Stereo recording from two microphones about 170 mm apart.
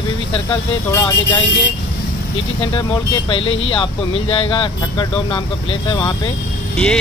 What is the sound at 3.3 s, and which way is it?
Speech, 30° left (ahead or behind).